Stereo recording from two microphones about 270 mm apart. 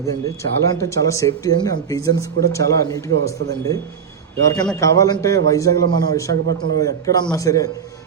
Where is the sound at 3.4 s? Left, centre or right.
Right.